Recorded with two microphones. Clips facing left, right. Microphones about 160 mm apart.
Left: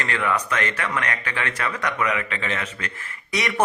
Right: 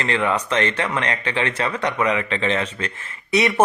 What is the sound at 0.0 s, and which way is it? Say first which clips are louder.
A man's voice: right 3 dB; 25° right (ahead or behind).